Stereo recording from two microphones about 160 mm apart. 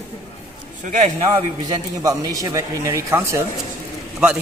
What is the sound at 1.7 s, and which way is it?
A man's voice, 25° right (ahead or behind).